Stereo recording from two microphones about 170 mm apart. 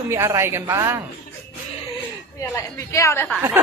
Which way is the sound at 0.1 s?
15° right (ahead or behind).